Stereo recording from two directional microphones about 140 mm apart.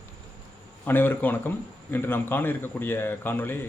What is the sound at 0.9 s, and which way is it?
A man's voice, 15° left (ahead or behind).